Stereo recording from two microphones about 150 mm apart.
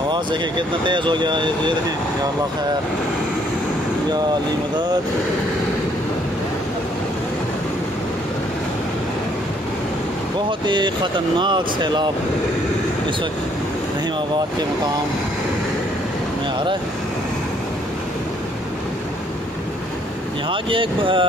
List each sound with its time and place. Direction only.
0.1 s speech: 30° right (ahead or behind)
10.6 s speech: 30° right (ahead or behind)
20.4 s speech: 35° right (ahead or behind)